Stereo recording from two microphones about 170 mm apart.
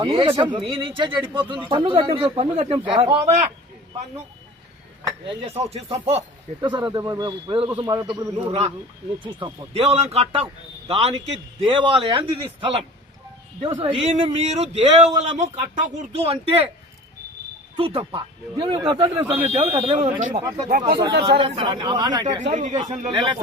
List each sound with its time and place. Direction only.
0.0 s speech: 30° right (ahead or behind)
5.5 s speech: 35° right (ahead or behind)
16.1 s speech: 35° right (ahead or behind)
17.7 s speech: 35° right (ahead or behind)
21.0 s speech: 25° right (ahead or behind)
22.5 s speech: 45° right (ahead or behind)
23.1 s speech: 25° right (ahead or behind)